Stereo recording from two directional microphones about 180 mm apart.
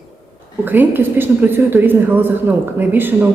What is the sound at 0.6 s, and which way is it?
A woman's voice, 10° right (ahead or behind).